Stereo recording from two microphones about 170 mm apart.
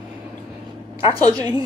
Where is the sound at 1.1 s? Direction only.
25° right (ahead or behind).